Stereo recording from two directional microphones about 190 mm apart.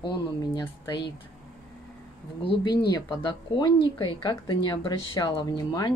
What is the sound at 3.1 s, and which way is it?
Speech, 20° left (ahead or behind).